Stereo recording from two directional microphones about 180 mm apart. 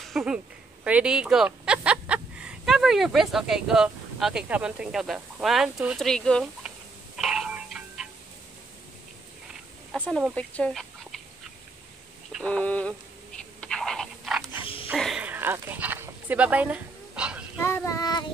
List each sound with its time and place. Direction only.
0.1 s speech: 5° right (ahead or behind)
7.2 s music: 5° right (ahead or behind)
9.9 s a sound: 5° left (ahead or behind)
10.3 s speech: 5° left (ahead or behind)
12.3 s a sound: 5° left (ahead or behind)
17.6 s child singing: 15° left (ahead or behind)